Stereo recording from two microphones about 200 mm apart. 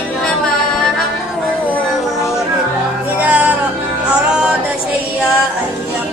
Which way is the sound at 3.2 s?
5° right (ahead or behind).